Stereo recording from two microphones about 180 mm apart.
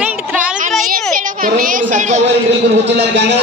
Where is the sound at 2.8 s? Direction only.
75° right (ahead or behind).